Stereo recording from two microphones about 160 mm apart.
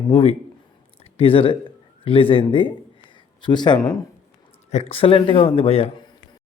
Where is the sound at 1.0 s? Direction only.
35° left (ahead or behind).